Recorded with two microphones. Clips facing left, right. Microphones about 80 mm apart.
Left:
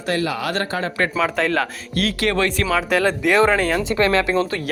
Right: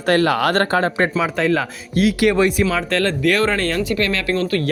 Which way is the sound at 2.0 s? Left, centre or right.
Centre.